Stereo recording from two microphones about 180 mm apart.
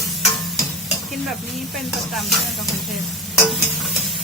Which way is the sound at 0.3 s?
Centre (ahead or behind).